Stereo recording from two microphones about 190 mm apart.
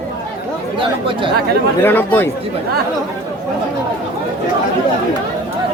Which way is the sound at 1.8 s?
10° left (ahead or behind).